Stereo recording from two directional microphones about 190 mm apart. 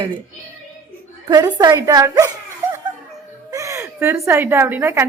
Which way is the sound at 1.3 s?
20° right (ahead or behind).